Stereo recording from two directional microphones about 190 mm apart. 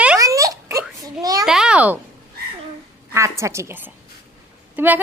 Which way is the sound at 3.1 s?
15° right (ahead or behind).